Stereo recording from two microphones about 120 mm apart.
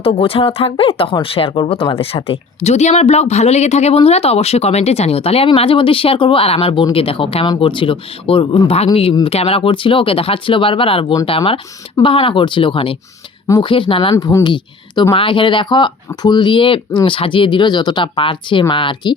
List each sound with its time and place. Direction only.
0.0 s speech: 50° left (ahead or behind)
7.4 s speech: 40° left (ahead or behind)
14.3 s speech: 35° left (ahead or behind)